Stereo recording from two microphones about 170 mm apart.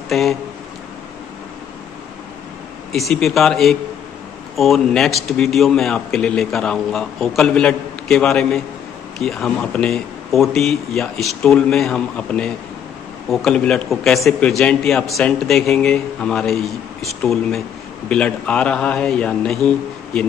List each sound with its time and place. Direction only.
0.1 s a man's voice: centre (ahead or behind)
2.9 s a man's voice: centre (ahead or behind)